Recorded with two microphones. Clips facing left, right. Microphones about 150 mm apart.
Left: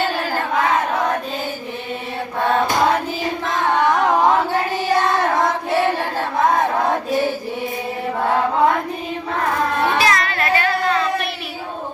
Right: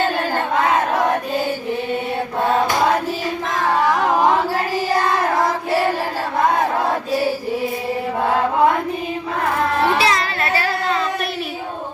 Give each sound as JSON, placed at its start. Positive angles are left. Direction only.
{"t": 3.7, "sound": "carnatic music", "side_deg": -5}
{"t": 10.0, "sound": "singing", "side_deg": -30}